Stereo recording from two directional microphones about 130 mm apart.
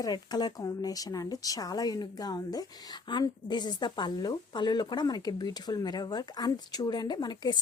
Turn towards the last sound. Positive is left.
turn(degrees=35)  # may be behind; listen again after turning